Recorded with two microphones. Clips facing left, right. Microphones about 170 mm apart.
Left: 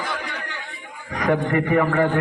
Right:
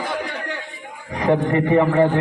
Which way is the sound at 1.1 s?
25° right (ahead or behind).